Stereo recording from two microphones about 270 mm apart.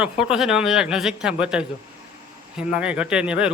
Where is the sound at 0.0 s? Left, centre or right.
Centre.